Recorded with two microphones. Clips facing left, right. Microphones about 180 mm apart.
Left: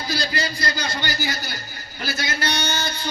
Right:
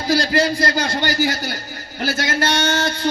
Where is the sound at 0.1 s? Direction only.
90° right.